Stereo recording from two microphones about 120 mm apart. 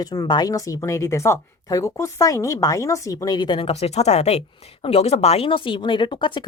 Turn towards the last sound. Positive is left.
turn(degrees=40)  # may be behind; listen again after turning